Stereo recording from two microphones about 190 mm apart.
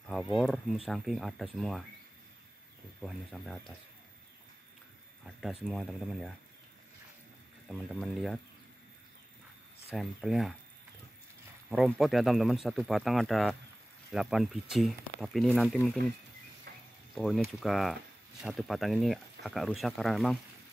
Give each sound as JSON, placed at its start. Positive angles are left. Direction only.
{"t": 0.8, "sound": "speech", "side_deg": 0}
{"t": 3.0, "sound": "speech", "side_deg": 0}
{"t": 5.2, "sound": "speech", "side_deg": 0}
{"t": 7.6, "sound": "speech", "side_deg": 0}
{"t": 9.8, "sound": "speech", "side_deg": 0}
{"t": 11.7, "sound": "speech", "side_deg": 0}
{"t": 16.7, "sound": "a sound", "side_deg": -60}
{"t": 17.1, "sound": "speech", "side_deg": 0}